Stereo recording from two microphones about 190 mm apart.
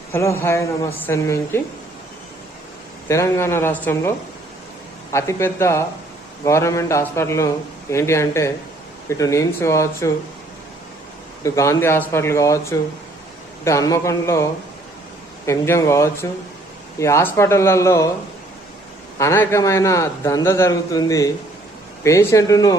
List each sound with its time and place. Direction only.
0.1 s a man's voice: 15° left (ahead or behind)
3.1 s a man's voice: 15° left (ahead or behind)
5.1 s a man's voice: 15° left (ahead or behind)
11.4 s a man's voice: 15° left (ahead or behind)
15.4 s a man's voice: 15° left (ahead or behind)
19.2 s a man's voice: 15° left (ahead or behind)